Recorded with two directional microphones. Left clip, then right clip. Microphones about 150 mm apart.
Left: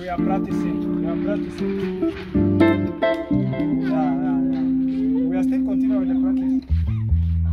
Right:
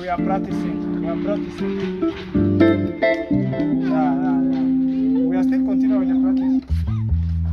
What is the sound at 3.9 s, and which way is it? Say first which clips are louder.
Music: right 3 dB; 5° left (ahead or behind).